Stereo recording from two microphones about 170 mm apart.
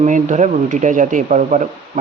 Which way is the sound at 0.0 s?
45° right (ahead or behind).